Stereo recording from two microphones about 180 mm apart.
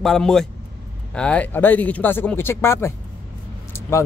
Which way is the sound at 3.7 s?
15° left (ahead or behind).